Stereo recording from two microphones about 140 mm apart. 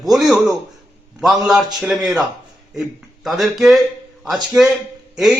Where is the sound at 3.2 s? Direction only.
Centre (ahead or behind).